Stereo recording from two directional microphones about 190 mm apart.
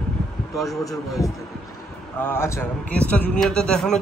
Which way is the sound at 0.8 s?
15° left (ahead or behind).